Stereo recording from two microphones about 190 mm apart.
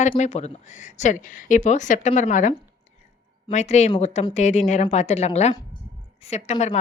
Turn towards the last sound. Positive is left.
turn(degrees=35)  # may be behind; listen again after turning